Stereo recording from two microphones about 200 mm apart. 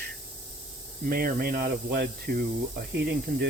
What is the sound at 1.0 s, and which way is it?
Speech, 45° right (ahead or behind).